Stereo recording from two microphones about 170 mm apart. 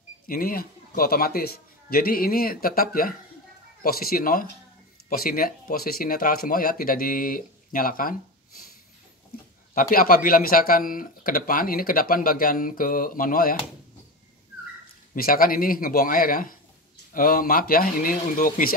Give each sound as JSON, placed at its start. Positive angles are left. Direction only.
{"t": 0.3, "sound": "speech", "side_deg": 60}
{"t": 9.8, "sound": "speech", "side_deg": 55}
{"t": 15.1, "sound": "speech", "side_deg": 55}